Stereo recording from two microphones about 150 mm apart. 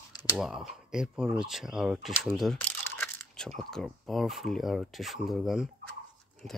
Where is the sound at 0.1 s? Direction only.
30° left (ahead or behind).